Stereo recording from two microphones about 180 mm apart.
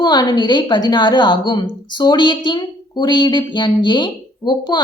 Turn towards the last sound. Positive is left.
turn(degrees=25)  # may be behind; listen again after turning